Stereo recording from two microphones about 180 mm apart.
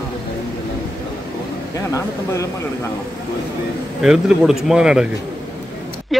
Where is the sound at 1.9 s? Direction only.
15° left (ahead or behind).